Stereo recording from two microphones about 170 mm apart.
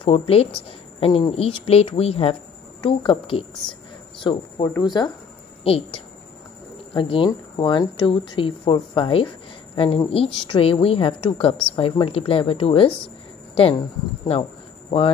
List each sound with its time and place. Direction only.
0.0 s a woman's voice: 35° left (ahead or behind)